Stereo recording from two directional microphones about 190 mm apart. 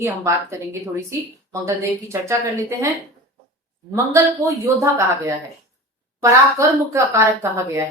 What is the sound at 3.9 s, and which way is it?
Speech, 15° right (ahead or behind).